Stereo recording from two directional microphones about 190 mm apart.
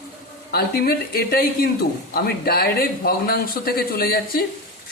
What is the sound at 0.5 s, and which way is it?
A man's voice, 55° left (ahead or behind).